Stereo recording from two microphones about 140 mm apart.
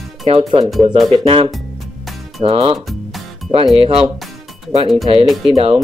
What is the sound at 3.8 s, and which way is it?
Speech, 45° right (ahead or behind).